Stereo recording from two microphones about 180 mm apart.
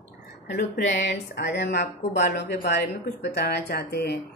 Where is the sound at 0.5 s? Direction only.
70° left (ahead or behind).